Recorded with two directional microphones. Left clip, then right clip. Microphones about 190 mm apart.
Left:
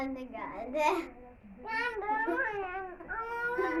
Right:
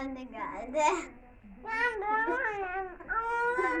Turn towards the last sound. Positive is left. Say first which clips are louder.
# right 5 dB
turn(degrees=-15)  # may be behind; listen again after turning